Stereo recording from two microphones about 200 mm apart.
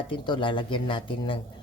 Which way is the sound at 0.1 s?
25° left (ahead or behind).